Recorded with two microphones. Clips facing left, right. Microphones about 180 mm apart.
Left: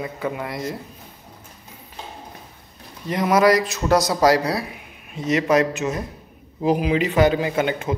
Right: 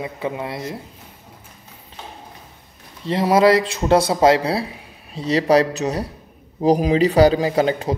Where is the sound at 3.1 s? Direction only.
30° right (ahead or behind).